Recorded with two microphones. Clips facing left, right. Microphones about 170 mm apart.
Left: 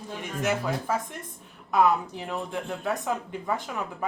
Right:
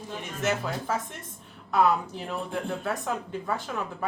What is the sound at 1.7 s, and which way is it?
Speech, 20° left (ahead or behind).